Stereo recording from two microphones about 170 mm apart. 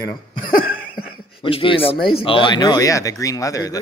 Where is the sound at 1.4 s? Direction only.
30° left (ahead or behind).